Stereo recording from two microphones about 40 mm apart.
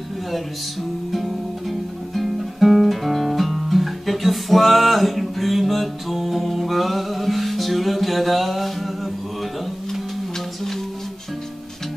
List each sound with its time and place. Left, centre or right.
1.1 s music: centre